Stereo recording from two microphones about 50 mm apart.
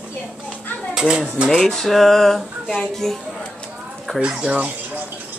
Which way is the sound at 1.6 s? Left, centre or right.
Centre.